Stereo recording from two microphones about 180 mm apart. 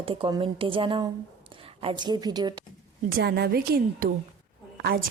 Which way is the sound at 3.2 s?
65° right (ahead or behind).